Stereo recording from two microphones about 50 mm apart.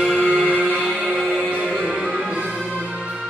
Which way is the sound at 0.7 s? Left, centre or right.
Centre.